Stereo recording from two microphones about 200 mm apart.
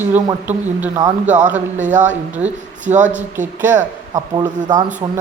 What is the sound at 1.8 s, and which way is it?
Speech, 40° right (ahead or behind).